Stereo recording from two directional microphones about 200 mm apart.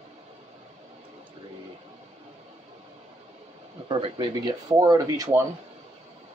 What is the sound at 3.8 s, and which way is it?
Speech, 25° right (ahead or behind).